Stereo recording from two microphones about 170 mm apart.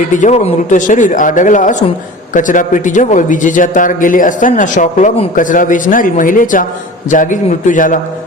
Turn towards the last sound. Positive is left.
turn(degrees=50)  # may be behind; listen again after turning